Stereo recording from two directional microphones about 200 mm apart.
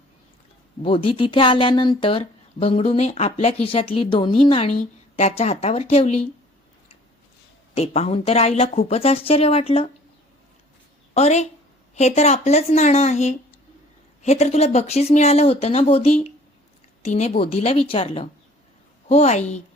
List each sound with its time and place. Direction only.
0.8 s speech: 25° left (ahead or behind)
7.8 s speech: 30° left (ahead or behind)
11.1 s speech: 35° left (ahead or behind)